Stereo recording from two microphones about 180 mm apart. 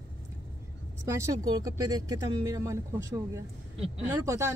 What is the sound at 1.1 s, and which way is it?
Speech, 20° right (ahead or behind).